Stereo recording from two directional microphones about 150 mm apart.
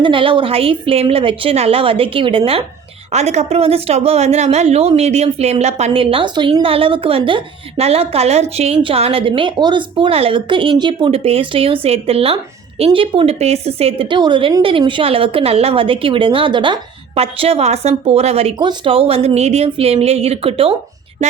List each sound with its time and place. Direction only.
0.0 s speech: 35° right (ahead or behind)
3.1 s speech: 50° right (ahead or behind)
18.6 s speech: 35° right (ahead or behind)